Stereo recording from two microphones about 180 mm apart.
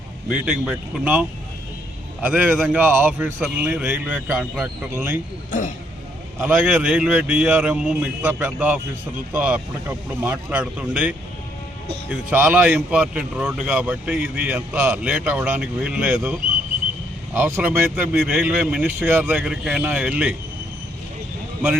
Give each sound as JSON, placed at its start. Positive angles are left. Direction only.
{"t": 0.3, "sound": "speech", "side_deg": -5}
{"t": 5.5, "sound": "speech", "side_deg": 45}
{"t": 6.4, "sound": "speech", "side_deg": -10}
{"t": 17.3, "sound": "speech", "side_deg": -10}